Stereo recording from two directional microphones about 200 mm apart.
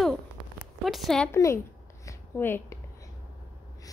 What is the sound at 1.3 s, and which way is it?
Speech, 15° left (ahead or behind).